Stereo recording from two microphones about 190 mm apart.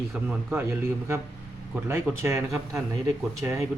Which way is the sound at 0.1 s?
10° right (ahead or behind).